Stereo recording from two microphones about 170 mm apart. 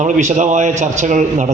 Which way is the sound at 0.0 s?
45° right (ahead or behind).